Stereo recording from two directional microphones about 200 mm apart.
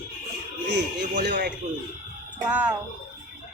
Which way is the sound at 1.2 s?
55° right (ahead or behind).